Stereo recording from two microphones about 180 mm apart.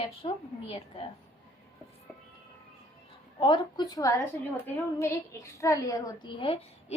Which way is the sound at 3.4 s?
25° left (ahead or behind).